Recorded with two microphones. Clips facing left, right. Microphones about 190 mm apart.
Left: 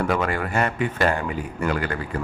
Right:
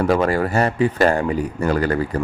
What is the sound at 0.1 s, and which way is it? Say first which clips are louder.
A man's voice: right 6 dB; 35° right (ahead or behind).